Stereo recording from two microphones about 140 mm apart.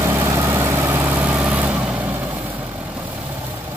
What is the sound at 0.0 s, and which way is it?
Vehicle, 15° right (ahead or behind).